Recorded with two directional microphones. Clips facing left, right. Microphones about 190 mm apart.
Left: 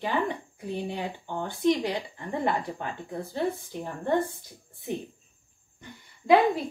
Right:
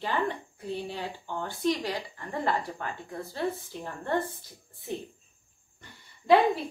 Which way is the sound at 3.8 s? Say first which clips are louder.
Left 3 dB; 15° left (ahead or behind).